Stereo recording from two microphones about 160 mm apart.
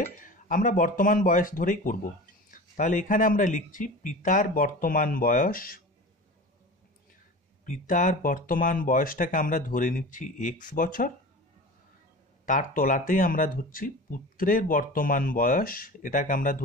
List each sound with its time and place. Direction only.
0.2 s speech: 55° left (ahead or behind)
7.6 s speech: 55° left (ahead or behind)
12.4 s speech: 55° left (ahead or behind)